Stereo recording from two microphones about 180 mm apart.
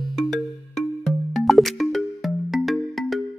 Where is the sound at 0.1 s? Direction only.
Centre (ahead or behind).